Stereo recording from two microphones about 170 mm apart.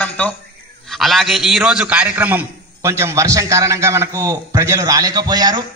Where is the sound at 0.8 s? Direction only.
Centre (ahead or behind).